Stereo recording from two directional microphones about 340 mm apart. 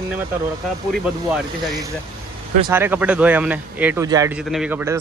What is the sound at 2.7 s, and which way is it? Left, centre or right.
Speech, centre.